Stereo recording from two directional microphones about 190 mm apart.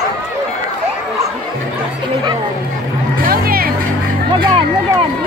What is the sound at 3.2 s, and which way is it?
Music, 50° right (ahead or behind).